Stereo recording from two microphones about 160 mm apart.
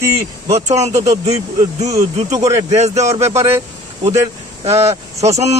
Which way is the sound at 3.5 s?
15° right (ahead or behind).